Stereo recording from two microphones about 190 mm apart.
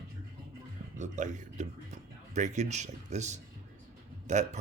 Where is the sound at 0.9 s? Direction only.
40° right (ahead or behind).